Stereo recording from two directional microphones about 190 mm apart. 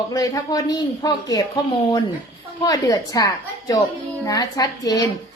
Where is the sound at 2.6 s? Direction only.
20° left (ahead or behind).